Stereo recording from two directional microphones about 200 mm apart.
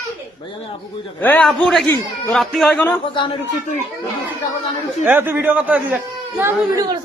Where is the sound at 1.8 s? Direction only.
15° left (ahead or behind).